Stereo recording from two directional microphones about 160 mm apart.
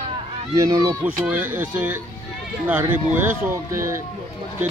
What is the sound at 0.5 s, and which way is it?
Speech, 20° right (ahead or behind).